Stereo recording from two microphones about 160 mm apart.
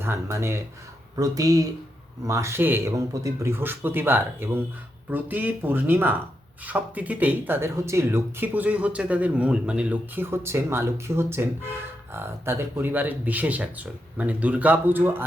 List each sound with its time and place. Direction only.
0.0 s speech: 15° right (ahead or behind)